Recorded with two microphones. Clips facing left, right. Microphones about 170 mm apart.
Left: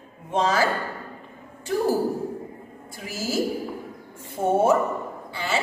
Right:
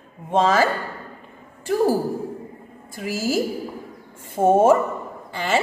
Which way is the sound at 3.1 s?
50° right (ahead or behind).